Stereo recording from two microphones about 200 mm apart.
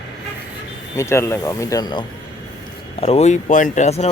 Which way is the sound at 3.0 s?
35° left (ahead or behind).